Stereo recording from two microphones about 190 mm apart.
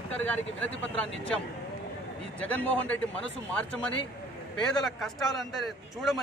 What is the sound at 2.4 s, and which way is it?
A man's voice, 10° left (ahead or behind).